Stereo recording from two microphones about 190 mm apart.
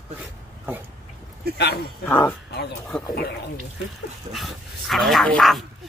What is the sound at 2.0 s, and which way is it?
Speech, 10° left (ahead or behind).